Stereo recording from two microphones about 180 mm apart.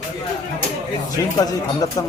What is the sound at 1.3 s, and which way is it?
Speech, 20° left (ahead or behind).